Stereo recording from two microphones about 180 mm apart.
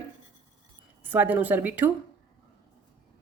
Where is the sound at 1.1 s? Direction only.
10° right (ahead or behind).